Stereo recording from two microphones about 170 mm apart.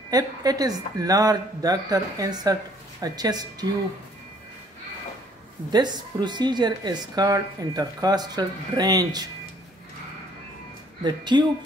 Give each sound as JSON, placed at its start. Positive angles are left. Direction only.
{"t": 0.1, "sound": "a woman's voice", "side_deg": -20}
{"t": 5.7, "sound": "a woman's voice", "side_deg": -25}
{"t": 11.1, "sound": "a woman's voice", "side_deg": -25}